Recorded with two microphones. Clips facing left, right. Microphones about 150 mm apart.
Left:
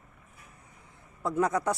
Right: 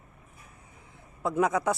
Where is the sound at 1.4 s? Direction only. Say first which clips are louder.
Right 1 dB; 5° right (ahead or behind).